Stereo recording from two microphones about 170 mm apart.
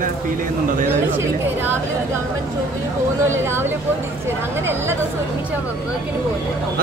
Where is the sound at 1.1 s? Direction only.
15° right (ahead or behind).